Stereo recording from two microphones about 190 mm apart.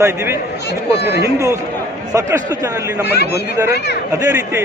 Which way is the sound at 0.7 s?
60° left (ahead or behind).